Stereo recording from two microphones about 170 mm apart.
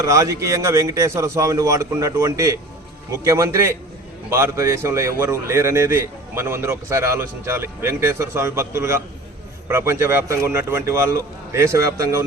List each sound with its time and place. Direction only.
0.0 s a man's voice: 20° right (ahead or behind)